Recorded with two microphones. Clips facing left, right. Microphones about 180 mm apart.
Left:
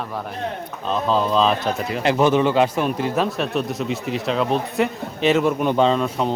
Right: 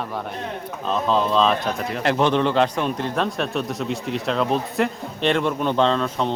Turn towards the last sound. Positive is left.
turn(degrees=10)  # may be behind; listen again after turning